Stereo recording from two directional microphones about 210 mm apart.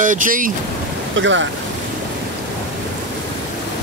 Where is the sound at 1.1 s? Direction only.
65° right (ahead or behind).